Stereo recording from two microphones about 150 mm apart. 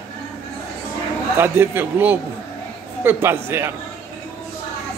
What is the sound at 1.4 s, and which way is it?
A man's voice, 15° right (ahead or behind).